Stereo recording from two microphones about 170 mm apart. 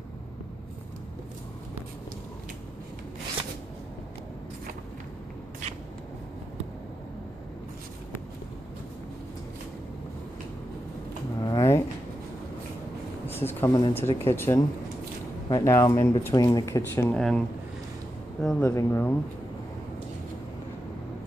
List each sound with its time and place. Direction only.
11.3 s a sound: 25° left (ahead or behind)
13.3 s a sound: 15° left (ahead or behind)
13.9 s speech: 15° left (ahead or behind)
17.1 s speech: 5° left (ahead or behind)
18.4 s speech: centre (ahead or behind)
18.7 s speech: 15° left (ahead or behind)